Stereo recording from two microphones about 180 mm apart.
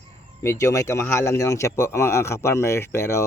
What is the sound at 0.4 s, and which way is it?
Speech, 15° left (ahead or behind).